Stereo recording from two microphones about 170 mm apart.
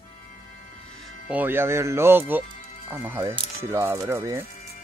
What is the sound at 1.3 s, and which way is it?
Speech, 10° right (ahead or behind).